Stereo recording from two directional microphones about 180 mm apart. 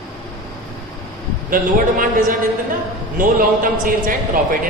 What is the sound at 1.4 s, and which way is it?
Speech, 50° right (ahead or behind).